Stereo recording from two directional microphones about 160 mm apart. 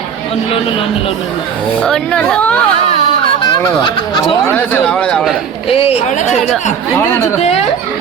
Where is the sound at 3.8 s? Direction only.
30° left (ahead or behind).